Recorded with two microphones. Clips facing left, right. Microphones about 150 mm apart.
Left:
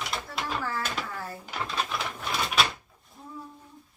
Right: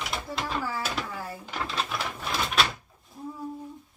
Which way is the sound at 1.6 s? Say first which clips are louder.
Even; centre (ahead or behind).